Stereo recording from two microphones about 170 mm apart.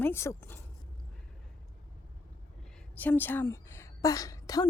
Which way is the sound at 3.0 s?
10° left (ahead or behind).